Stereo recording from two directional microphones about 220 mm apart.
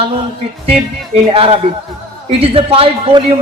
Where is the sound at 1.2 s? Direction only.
25° right (ahead or behind).